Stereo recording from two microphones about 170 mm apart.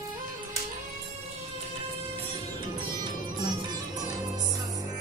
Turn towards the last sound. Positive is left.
turn(degrees=-25)  # may be behind; listen again after turning